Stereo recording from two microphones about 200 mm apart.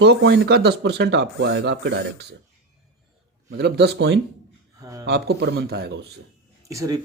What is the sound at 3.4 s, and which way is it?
Speech, 55° right (ahead or behind).